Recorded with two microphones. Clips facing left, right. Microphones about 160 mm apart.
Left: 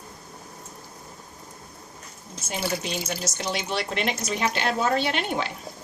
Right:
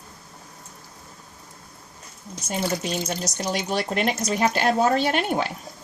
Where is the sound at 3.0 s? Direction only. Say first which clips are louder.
Right 3 dB; 5° left (ahead or behind).